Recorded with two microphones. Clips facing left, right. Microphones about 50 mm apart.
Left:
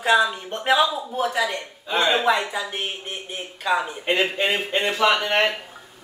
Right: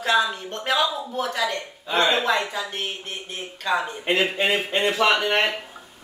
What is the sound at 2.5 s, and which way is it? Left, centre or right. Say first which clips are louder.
Speech: left 1 dB; centre.